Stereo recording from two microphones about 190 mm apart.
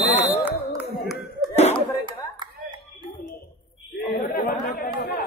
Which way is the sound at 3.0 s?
50° left (ahead or behind).